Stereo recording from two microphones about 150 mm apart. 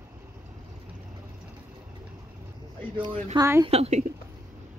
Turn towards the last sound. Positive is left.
turn(degrees=-45)  # may be behind; listen again after turning